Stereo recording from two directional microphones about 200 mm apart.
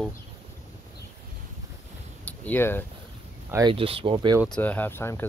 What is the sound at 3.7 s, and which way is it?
Speech, 25° right (ahead or behind).